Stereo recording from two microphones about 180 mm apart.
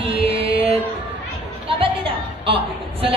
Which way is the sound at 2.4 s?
30° right (ahead or behind).